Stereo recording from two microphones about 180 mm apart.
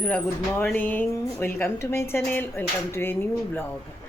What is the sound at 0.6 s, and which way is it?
A woman's voice, 10° left (ahead or behind).